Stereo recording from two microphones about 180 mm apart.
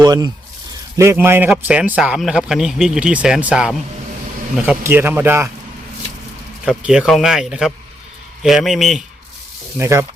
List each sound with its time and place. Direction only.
0.0 s a sound: 20° right (ahead or behind)
0.9 s a man's voice: 15° right (ahead or behind)
6.7 s a man's voice: 5° right (ahead or behind)
9.7 s speech: 15° right (ahead or behind)